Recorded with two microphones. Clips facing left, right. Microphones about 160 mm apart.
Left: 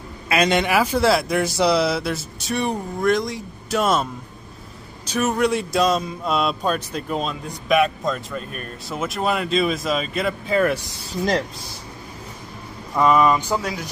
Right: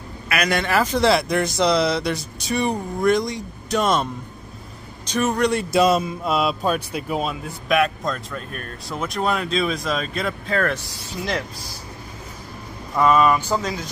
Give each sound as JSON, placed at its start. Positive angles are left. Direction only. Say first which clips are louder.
{"t": 0.3, "sound": "a man's voice", "louder": "left 3 dB", "side_deg": 25}
{"t": 0.7, "sound": "speech", "louder": "even", "side_deg": 10}
{"t": 5.1, "sound": "speech", "louder": "even", "side_deg": 5}
{"t": 12.9, "sound": "speech", "louder": "even", "side_deg": 15}